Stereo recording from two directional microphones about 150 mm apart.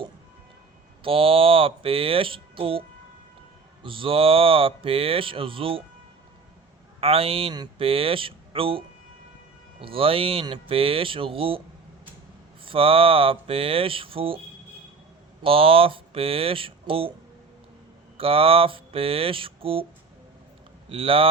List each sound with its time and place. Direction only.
1.0 s speech: 35° right (ahead or behind)
3.8 s speech: 35° right (ahead or behind)
7.0 s speech: 40° right (ahead or behind)
9.8 s speech: 40° right (ahead or behind)
12.6 s speech: 40° right (ahead or behind)
15.4 s speech: 40° right (ahead or behind)
18.2 s speech: 40° right (ahead or behind)
20.9 s speech: 40° right (ahead or behind)